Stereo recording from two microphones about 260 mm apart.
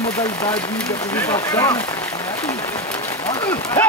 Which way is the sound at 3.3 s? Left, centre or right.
Centre.